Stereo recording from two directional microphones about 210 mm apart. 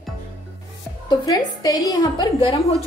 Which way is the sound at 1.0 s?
20° left (ahead or behind).